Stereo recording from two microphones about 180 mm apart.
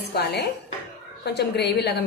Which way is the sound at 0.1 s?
65° left (ahead or behind).